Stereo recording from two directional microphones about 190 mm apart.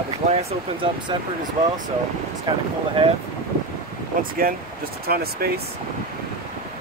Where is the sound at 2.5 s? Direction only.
20° right (ahead or behind).